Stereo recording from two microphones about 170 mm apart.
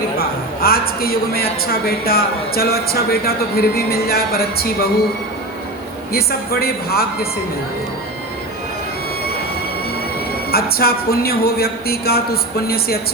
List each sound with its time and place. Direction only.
0.2 s a man's voice: 60° left (ahead or behind)
6.1 s a man's voice: 65° left (ahead or behind)
10.5 s a man's voice: 65° left (ahead or behind)